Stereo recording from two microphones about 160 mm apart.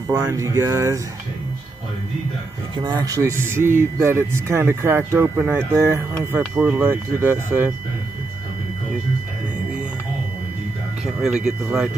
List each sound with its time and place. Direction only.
0.1 s speech: 15° right (ahead or behind)
2.7 s speech: 25° right (ahead or behind)
11.1 s speech: centre (ahead or behind)